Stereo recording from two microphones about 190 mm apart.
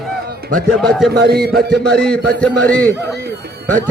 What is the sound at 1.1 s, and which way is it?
Speech, 55° right (ahead or behind).